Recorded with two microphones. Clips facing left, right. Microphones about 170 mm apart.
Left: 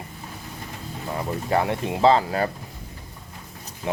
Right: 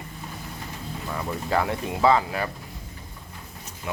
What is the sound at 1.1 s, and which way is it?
Speech, 25° left (ahead or behind).